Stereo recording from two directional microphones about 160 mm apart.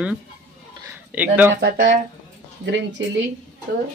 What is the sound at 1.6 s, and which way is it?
Speech, 85° right.